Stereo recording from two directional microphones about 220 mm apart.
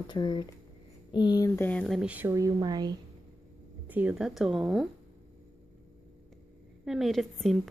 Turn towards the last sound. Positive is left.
turn(degrees=0)  # may be behind; listen again after turning